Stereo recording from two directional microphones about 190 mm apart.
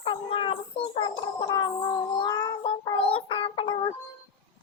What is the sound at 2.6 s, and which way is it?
Child singing, 25° left (ahead or behind).